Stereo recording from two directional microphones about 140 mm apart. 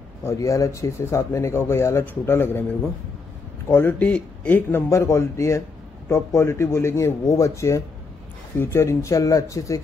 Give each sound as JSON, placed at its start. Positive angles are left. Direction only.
{"t": 0.2, "sound": "speech", "side_deg": 20}
{"t": 3.7, "sound": "speech", "side_deg": 10}